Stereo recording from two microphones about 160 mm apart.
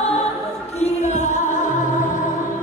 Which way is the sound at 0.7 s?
45° left (ahead or behind).